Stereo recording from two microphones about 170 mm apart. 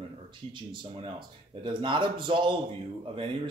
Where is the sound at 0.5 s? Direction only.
30° right (ahead or behind).